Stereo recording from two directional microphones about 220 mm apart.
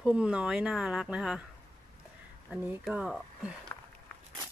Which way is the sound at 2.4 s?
Centre (ahead or behind).